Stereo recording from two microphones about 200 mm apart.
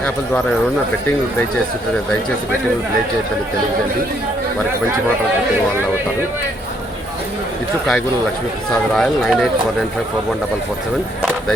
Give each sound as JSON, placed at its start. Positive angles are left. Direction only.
{"t": 8.7, "sound": "speech", "side_deg": 5}